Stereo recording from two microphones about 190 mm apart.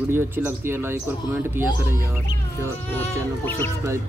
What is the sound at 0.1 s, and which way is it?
Speech, 10° right (ahead or behind).